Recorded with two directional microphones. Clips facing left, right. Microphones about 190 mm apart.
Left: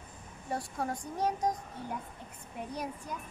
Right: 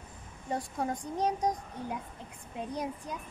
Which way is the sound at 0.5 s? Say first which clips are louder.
Right 2 dB; 15° right (ahead or behind).